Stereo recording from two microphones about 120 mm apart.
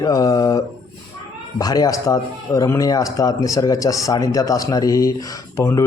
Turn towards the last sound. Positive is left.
turn(degrees=25)  # may be behind; listen again after turning